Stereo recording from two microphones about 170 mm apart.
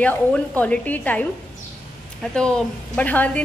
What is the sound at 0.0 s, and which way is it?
A woman's voice, 10° left (ahead or behind).